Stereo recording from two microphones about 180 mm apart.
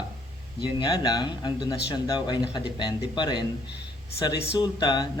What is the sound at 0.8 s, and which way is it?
Speech, 20° left (ahead or behind).